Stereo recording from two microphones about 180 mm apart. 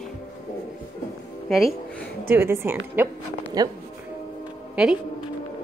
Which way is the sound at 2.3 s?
15° right (ahead or behind).